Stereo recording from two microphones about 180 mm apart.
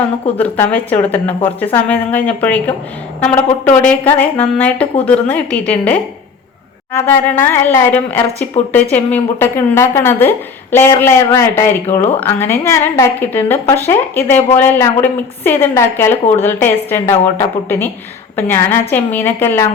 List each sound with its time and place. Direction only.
0.3 s a woman's voice: 10° left (ahead or behind)